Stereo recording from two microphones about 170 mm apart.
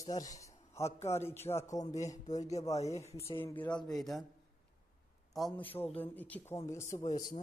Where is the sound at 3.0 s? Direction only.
15° left (ahead or behind).